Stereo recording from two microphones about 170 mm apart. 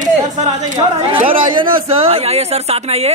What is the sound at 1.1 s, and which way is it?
A man's voice, 30° right (ahead or behind).